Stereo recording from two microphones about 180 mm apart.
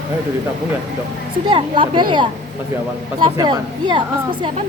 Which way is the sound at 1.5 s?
25° right (ahead or behind).